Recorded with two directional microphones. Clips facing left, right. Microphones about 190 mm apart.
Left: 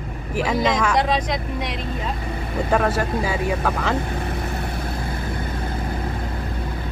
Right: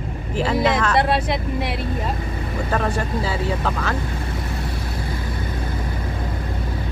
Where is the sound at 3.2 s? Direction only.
15° left (ahead or behind).